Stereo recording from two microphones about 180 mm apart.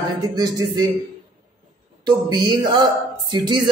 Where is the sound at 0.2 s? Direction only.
20° right (ahead or behind).